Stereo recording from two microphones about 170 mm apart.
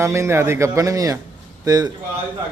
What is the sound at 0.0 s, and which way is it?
Speech, 15° right (ahead or behind).